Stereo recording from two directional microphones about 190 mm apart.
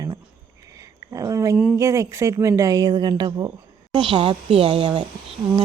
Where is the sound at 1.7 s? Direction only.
15° right (ahead or behind).